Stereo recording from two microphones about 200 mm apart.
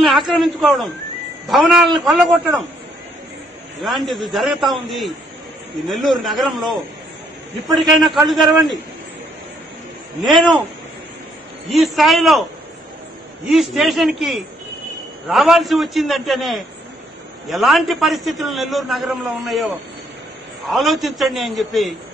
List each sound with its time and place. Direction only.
0.0 s a man's voice: centre (ahead or behind)
3.8 s a man's voice: centre (ahead or behind)
10.2 s a man's voice: centre (ahead or behind)
11.7 s a man's voice: centre (ahead or behind)
13.5 s a man's voice: centre (ahead or behind)
20.7 s a man's voice: centre (ahead or behind)